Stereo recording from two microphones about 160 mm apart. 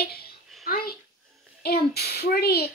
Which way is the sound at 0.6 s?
70° left (ahead or behind).